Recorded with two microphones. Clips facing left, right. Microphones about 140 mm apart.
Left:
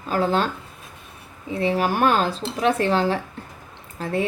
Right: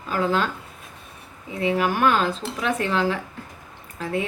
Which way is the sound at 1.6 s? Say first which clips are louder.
Left 1 dB; 35° left (ahead or behind).